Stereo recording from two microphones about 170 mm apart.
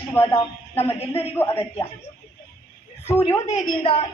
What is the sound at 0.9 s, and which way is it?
Speech, 35° left (ahead or behind).